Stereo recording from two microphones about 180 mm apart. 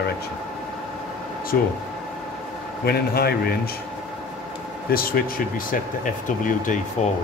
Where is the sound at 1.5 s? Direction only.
60° left (ahead or behind).